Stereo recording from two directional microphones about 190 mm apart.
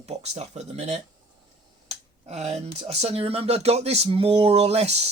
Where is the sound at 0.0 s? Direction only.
35° right (ahead or behind).